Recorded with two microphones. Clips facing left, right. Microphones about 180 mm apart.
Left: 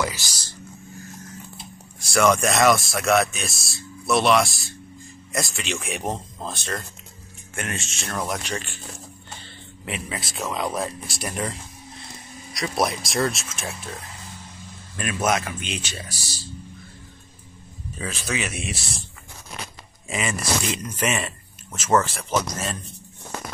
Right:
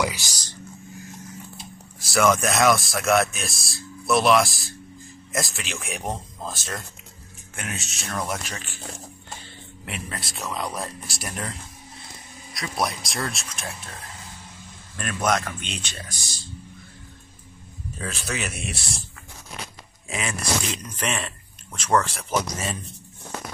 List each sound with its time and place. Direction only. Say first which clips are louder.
0.0 s speech: right 1 dB; 15° right (ahead or behind)
2.0 s speech: left 1 dB; centre (ahead or behind)
9.8 s speech: left 3 dB; centre (ahead or behind)
12.5 s speech: left 3 dB; centre (ahead or behind)
15.0 s speech: left 1 dB; 5° left (ahead or behind)
17.9 s speech: left 2 dB; centre (ahead or behind)
20.1 s speech: left 2 dB; centre (ahead or behind)